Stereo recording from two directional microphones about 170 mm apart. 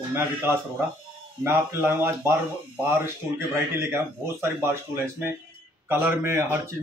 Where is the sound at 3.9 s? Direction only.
15° right (ahead or behind).